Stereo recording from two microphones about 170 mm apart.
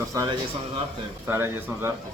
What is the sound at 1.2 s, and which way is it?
Speech, 15° right (ahead or behind).